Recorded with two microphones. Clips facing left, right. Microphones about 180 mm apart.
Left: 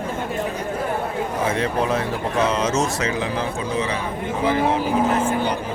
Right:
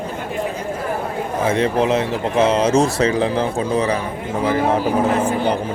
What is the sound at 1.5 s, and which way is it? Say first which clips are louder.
A man's voice: right 7 dB; 25° right (ahead or behind).